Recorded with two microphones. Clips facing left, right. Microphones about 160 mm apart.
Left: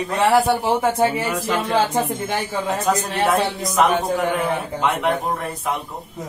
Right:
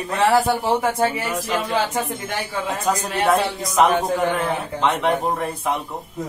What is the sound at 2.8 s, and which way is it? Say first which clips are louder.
A man's voice: right 1 dB; centre (ahead or behind).